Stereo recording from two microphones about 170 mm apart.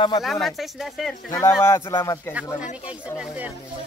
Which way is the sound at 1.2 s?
15° left (ahead or behind).